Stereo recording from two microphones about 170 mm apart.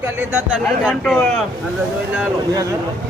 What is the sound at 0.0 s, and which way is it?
Speech, 15° right (ahead or behind).